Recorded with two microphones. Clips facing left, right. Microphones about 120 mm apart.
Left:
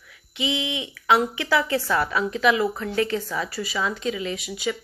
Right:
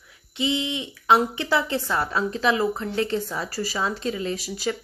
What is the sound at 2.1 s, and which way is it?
Speech, 35° right (ahead or behind).